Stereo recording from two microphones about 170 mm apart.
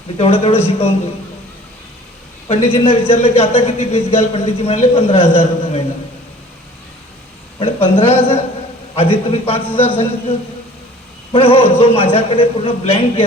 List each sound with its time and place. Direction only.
0.2 s a man's voice: 35° left (ahead or behind)
2.5 s a man's voice: 35° left (ahead or behind)
7.6 s a man's voice: 35° left (ahead or behind)